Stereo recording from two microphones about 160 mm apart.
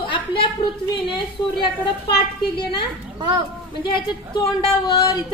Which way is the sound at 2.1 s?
90° left.